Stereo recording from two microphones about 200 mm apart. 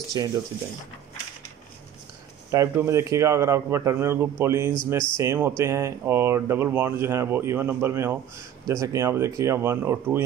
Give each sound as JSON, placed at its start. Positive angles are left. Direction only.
{"t": 0.2, "sound": "speech", "side_deg": -20}
{"t": 2.5, "sound": "speech", "side_deg": -15}